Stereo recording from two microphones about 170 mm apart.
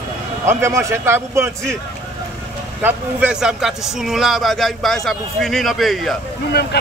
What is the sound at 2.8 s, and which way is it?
A man's voice, 10° right (ahead or behind).